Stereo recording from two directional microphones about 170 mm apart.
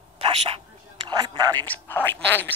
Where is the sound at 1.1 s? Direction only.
25° right (ahead or behind).